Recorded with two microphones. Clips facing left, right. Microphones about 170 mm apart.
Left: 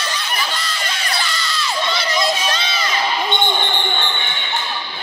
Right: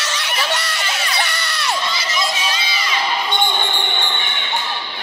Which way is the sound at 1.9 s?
60° left (ahead or behind).